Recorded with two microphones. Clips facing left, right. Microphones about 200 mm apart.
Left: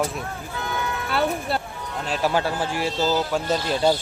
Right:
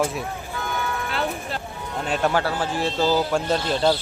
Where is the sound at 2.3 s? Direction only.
15° left (ahead or behind).